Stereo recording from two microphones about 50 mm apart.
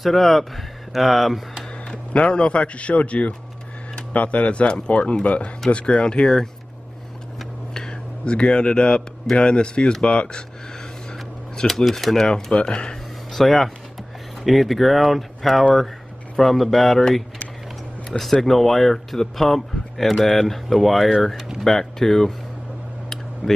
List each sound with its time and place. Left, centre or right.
0.0 s speech: centre
2.1 s speech: left
7.7 s a man's voice: centre
11.6 s speech: centre
13.3 s speech: centre
23.4 s speech: centre